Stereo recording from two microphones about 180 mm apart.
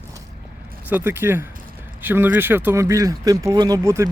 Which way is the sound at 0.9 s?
10° right (ahead or behind).